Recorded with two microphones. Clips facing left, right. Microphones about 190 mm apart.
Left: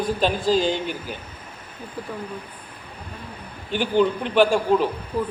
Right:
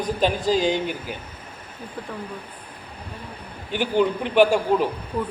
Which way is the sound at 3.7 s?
15° right (ahead or behind).